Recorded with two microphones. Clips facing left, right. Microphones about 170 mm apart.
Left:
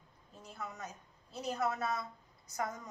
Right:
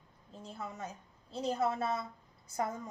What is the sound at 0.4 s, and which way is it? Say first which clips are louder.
A woman's voice: right 3 dB; 25° right (ahead or behind).